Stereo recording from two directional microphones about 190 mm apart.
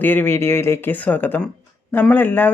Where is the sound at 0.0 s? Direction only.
10° left (ahead or behind).